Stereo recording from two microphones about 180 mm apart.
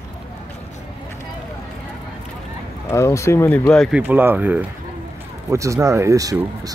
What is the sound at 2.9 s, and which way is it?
Speech, 15° left (ahead or behind).